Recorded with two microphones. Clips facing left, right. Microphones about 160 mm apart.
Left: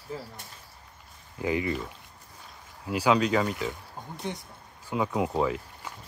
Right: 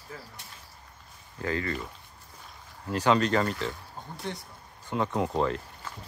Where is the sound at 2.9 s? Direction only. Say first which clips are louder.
Even; 5° left (ahead or behind).